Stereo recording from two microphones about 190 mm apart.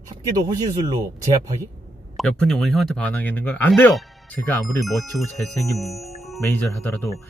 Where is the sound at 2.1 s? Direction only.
5° left (ahead or behind).